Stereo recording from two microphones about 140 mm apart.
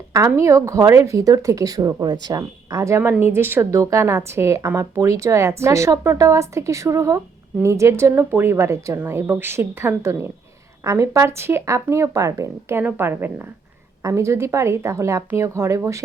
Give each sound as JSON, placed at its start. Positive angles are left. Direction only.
{"t": 0.1, "sound": "a woman's voice", "side_deg": -20}